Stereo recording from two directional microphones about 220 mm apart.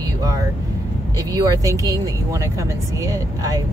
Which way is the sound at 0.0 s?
15° right (ahead or behind).